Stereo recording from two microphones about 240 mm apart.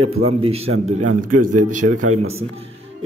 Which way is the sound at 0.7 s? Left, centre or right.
Right.